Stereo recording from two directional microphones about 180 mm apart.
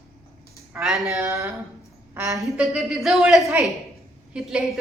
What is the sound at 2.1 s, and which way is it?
Speech, 15° right (ahead or behind).